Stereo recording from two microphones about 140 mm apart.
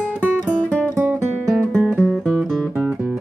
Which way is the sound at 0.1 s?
10° right (ahead or behind).